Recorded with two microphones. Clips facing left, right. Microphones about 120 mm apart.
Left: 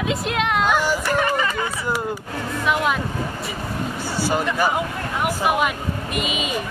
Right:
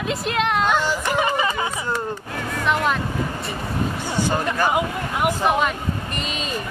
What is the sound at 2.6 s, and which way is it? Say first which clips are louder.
Speech: even; 5° left (ahead or behind).